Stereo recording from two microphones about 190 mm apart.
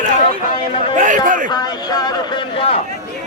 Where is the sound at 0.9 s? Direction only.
40° right (ahead or behind).